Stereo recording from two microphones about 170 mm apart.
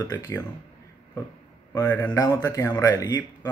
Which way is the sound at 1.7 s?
15° left (ahead or behind).